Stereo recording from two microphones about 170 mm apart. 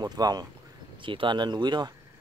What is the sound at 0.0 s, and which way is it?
Speech, 25° right (ahead or behind).